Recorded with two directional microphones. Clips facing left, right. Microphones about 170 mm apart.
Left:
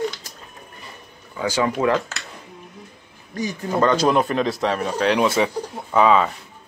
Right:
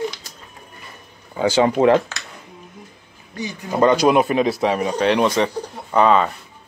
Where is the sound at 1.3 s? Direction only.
30° right (ahead or behind).